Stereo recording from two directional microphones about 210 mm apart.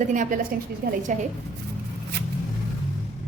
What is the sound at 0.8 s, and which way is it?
Speech, 45° right (ahead or behind).